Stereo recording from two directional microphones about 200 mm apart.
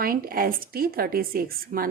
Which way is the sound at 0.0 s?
45° right (ahead or behind).